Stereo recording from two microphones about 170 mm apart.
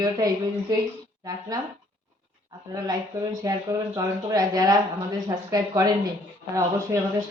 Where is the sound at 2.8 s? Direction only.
20° right (ahead or behind).